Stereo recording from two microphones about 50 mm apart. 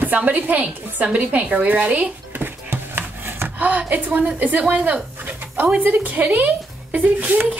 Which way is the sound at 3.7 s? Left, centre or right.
Right.